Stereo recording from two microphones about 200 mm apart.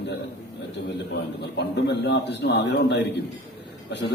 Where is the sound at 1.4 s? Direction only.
60° left (ahead or behind).